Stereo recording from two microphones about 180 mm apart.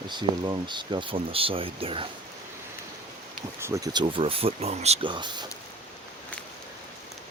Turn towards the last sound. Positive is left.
turn(degrees=-25)  # may be behind; listen again after turning